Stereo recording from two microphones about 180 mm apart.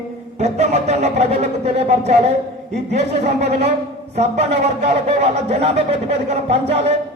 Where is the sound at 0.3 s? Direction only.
40° right (ahead or behind).